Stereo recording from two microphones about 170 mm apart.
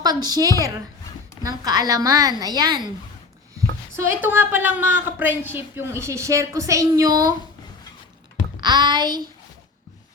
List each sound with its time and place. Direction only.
0.0 s a woman's voice: 25° right (ahead or behind)
3.9 s a woman's voice: 15° right (ahead or behind)
8.6 s a woman's voice: 25° right (ahead or behind)